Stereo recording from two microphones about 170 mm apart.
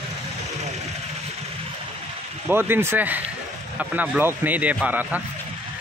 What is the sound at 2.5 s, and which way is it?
Speech, 10° right (ahead or behind).